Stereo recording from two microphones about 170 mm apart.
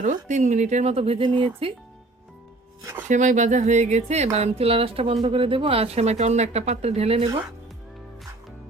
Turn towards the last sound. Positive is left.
turn(degrees=-35)  # may be behind; listen again after turning